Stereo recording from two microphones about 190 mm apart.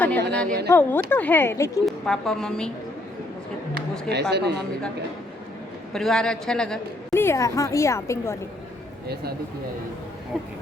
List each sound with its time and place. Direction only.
0.0 s a woman's voice: 10° left (ahead or behind)
1.8 s a man's voice: centre (ahead or behind)
4.1 s speech: 60° right (ahead or behind)
5.9 s a man's voice: centre (ahead or behind)
7.1 s a woman's voice: 15° left (ahead or behind)